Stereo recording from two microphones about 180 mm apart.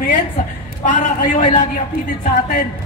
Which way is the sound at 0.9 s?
45° left (ahead or behind).